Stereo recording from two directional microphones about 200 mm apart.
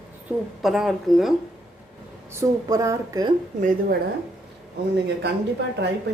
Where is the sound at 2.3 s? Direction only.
15° right (ahead or behind).